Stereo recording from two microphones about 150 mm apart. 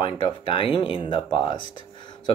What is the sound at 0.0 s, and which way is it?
Speech, 35° left (ahead or behind).